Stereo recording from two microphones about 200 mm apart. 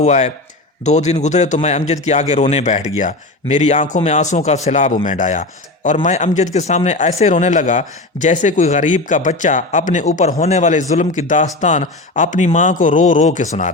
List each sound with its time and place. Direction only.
0.0 s speech: 35° left (ahead or behind)